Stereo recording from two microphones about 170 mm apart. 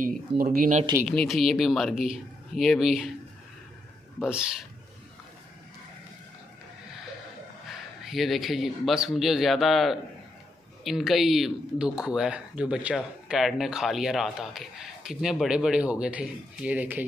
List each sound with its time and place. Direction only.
0.0 s speech: 60° right (ahead or behind)
1.0 s speech: centre (ahead or behind)
4.2 s speech: 5° right (ahead or behind)
8.0 s speech: centre (ahead or behind)